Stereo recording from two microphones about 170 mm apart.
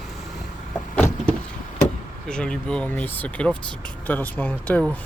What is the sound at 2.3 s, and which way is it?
Speech, 5° left (ahead or behind).